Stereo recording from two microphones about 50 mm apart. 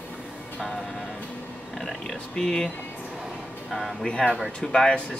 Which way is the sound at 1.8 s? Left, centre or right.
Centre.